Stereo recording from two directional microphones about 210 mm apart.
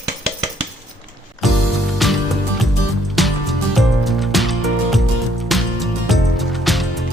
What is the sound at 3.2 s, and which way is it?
Music, centre (ahead or behind).